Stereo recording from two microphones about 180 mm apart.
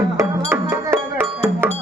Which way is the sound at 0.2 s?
15° right (ahead or behind).